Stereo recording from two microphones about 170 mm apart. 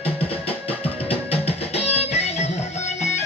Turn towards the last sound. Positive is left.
turn(degrees=40)  # may be behind; listen again after turning